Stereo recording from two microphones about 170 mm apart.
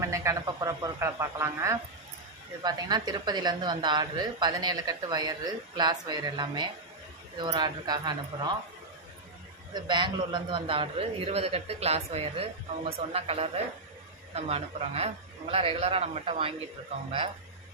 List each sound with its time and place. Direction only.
0.0 s a woman's voice: 20° right (ahead or behind)
9.7 s a man's voice: 25° right (ahead or behind)